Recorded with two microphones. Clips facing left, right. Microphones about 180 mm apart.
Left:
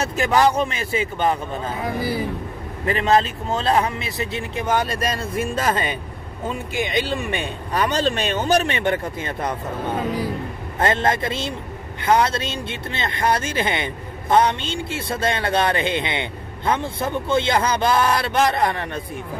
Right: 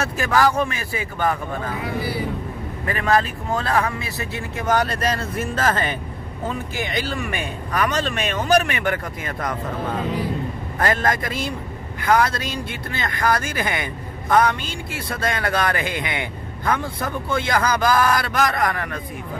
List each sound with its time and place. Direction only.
0.0 s speech: 20° left (ahead or behind)
2.9 s speech: 25° left (ahead or behind)